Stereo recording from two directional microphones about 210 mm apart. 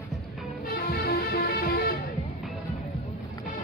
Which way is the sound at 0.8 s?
45° left (ahead or behind).